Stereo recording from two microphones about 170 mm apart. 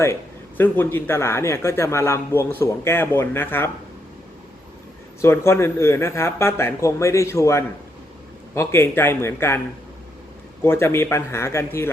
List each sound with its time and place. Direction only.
0.0 s speech: 15° left (ahead or behind)
5.2 s speech: 15° left (ahead or behind)
10.6 s speech: 15° left (ahead or behind)